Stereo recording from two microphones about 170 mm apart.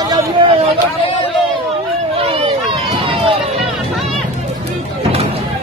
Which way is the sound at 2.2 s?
35° right (ahead or behind).